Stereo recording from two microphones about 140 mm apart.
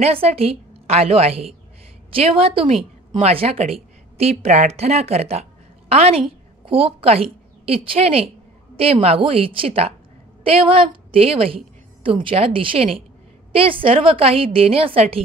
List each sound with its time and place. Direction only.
0.0 s a woman's voice: 45° right (ahead or behind)